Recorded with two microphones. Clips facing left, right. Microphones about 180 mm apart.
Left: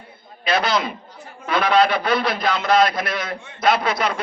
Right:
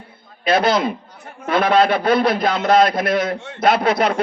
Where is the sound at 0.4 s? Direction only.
55° right (ahead or behind).